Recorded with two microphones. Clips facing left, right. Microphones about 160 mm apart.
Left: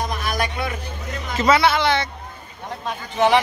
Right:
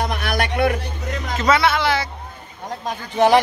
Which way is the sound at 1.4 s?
Centre (ahead or behind).